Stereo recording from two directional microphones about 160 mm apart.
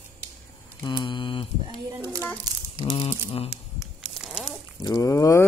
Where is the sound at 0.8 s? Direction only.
30° left (ahead or behind).